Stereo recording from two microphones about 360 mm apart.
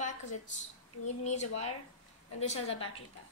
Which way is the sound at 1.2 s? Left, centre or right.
Centre.